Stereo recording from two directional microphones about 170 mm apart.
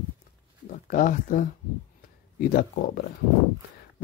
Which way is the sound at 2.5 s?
60° left (ahead or behind).